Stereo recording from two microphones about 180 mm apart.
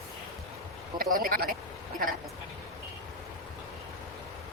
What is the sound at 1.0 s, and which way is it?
Speech, 50° right (ahead or behind).